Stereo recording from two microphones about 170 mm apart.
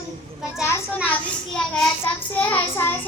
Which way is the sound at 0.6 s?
15° left (ahead or behind).